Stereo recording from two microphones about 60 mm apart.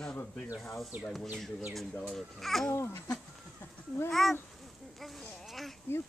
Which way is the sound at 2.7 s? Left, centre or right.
Left.